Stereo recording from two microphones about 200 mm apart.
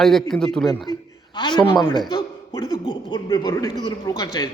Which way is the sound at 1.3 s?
20° left (ahead or behind).